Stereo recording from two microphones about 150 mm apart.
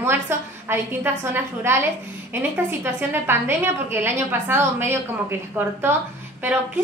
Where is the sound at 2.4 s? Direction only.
15° right (ahead or behind).